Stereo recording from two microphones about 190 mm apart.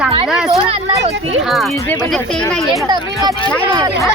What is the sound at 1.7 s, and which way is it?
Speech, 15° left (ahead or behind).